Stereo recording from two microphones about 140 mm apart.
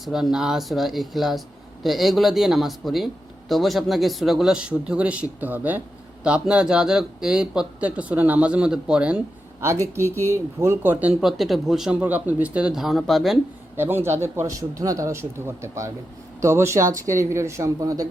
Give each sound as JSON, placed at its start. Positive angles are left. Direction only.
{"t": 0.0, "sound": "speech", "side_deg": -5}
{"t": 11.2, "sound": "speech", "side_deg": 0}
{"t": 13.7, "sound": "speech", "side_deg": -15}